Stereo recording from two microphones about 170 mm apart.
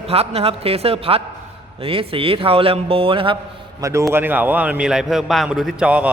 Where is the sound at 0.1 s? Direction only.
35° right (ahead or behind).